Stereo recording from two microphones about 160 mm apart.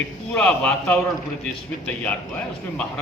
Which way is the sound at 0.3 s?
5° left (ahead or behind).